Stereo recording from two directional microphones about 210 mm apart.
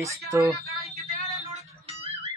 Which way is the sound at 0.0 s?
15° right (ahead or behind).